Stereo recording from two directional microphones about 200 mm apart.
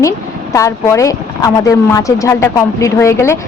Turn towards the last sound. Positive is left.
turn(degrees=15)  # may be behind; listen again after turning